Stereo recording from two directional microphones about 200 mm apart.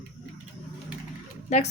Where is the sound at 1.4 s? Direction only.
35° left (ahead or behind).